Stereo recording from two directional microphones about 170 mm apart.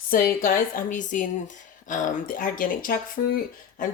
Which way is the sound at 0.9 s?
50° left (ahead or behind).